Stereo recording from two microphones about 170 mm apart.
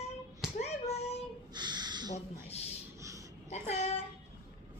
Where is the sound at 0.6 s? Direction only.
40° left (ahead or behind).